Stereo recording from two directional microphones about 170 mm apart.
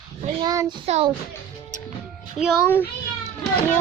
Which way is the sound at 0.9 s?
35° right (ahead or behind).